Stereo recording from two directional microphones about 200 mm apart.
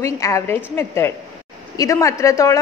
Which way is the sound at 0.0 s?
15° left (ahead or behind).